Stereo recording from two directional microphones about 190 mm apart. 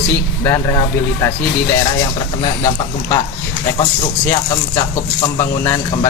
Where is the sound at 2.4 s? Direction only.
15° left (ahead or behind).